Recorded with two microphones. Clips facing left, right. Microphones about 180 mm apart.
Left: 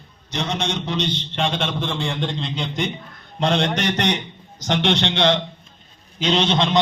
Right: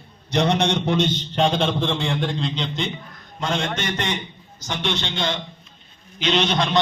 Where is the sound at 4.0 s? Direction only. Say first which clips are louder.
Left 5 dB; 75° left (ahead or behind).